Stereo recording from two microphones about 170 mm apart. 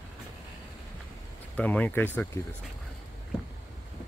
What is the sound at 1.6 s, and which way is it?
Speech, 10° left (ahead or behind).